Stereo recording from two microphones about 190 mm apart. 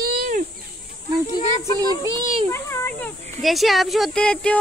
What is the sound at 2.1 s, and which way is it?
Speech, 25° right (ahead or behind).